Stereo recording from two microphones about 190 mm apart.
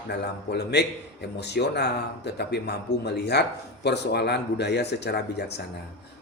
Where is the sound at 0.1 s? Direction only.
60° left (ahead or behind).